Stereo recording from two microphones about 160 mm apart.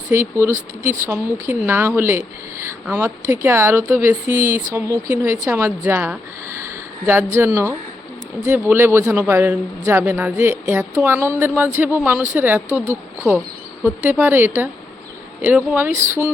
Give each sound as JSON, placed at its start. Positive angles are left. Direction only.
{"t": 0.1, "sound": "a man's voice", "side_deg": -15}